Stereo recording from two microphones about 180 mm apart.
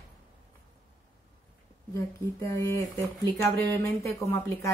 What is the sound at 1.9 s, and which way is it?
A woman's voice, 15° left (ahead or behind).